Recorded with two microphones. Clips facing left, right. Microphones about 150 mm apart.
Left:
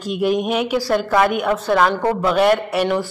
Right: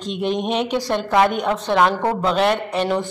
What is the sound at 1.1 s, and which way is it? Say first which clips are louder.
Speech: right 1 dB; 20° right (ahead or behind).